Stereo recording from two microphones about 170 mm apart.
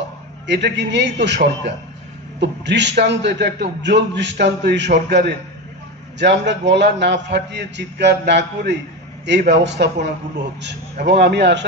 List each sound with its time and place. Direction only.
0.5 s a man's voice: 90° right